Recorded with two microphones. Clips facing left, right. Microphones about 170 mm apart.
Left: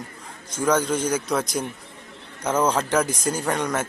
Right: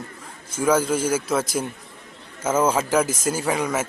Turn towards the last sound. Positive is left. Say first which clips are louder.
# right 1 dB
turn(degrees=-5)  # may be behind; listen again after turning